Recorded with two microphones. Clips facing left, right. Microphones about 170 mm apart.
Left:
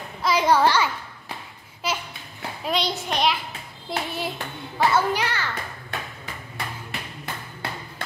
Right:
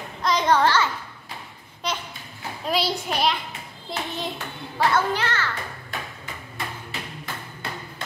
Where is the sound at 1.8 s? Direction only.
5° left (ahead or behind).